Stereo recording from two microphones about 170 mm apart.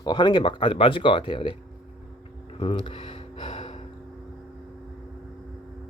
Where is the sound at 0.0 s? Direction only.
25° left (ahead or behind).